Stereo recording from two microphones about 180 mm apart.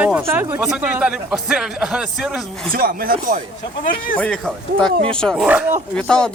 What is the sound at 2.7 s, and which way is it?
Speech, 55° right (ahead or behind).